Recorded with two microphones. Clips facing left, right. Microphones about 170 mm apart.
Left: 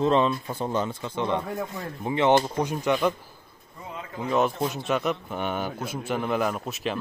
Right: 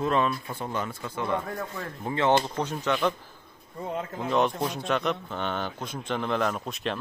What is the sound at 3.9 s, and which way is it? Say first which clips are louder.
Speech: right 2 dB; 45° right (ahead or behind).